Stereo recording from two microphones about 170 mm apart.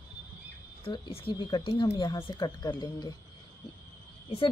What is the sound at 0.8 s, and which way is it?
A woman's voice, 35° left (ahead or behind).